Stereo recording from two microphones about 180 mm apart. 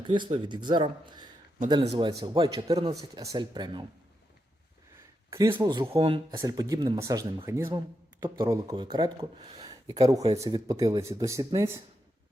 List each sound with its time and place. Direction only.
0.0 s speech: 25° right (ahead or behind)
5.5 s speech: 25° right (ahead or behind)